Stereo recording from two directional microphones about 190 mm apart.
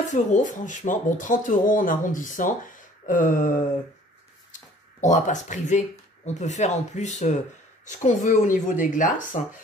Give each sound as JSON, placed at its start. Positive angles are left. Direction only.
{"t": 0.0, "sound": "speech", "side_deg": 40}
{"t": 5.0, "sound": "speech", "side_deg": 40}